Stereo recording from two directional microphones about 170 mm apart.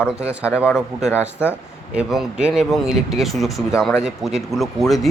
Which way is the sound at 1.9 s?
5° right (ahead or behind).